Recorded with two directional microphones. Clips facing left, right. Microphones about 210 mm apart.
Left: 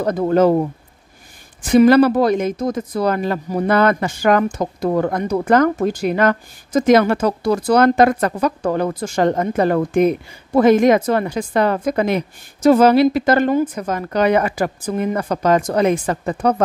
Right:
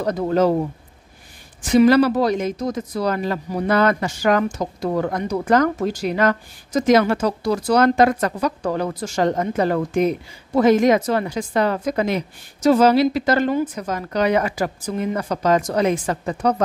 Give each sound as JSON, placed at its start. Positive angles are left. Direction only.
{"t": 0.0, "sound": "speech", "side_deg": 55}
{"t": 1.6, "sound": "speech", "side_deg": 55}